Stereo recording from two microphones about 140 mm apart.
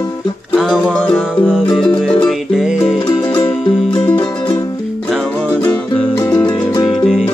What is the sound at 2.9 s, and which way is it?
Music, 40° left (ahead or behind).